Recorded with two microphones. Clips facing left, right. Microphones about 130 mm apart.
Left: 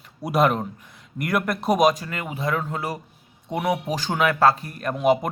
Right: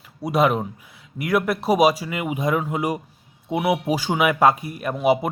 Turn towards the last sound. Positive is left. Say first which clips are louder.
# right 1 dB
turn(degrees=-5)  # may be behind; listen again after turning